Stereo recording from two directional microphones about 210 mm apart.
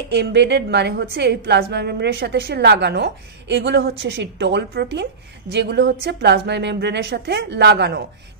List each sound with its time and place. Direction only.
0.1 s a woman's voice: 55° right (ahead or behind)